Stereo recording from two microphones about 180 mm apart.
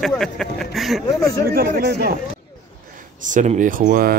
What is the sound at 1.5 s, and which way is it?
Speech, 60° right (ahead or behind).